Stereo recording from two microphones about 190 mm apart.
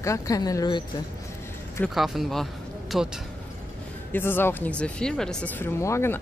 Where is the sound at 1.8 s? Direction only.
Centre (ahead or behind).